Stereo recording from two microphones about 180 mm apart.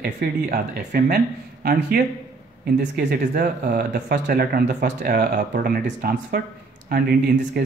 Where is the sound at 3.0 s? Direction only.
65° right (ahead or behind).